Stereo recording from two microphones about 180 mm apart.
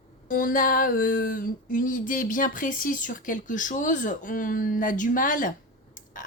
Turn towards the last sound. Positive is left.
turn(degrees=50)  # may be behind; listen again after turning